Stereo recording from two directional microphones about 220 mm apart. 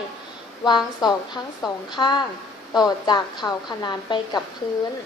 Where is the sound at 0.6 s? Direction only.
20° left (ahead or behind).